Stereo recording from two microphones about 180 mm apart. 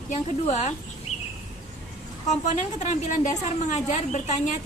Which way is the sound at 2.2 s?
40° left (ahead or behind).